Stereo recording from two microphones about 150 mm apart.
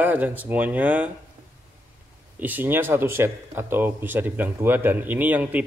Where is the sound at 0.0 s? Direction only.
10° right (ahead or behind).